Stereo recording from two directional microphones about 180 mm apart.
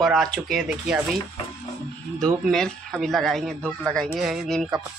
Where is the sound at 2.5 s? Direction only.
5° left (ahead or behind).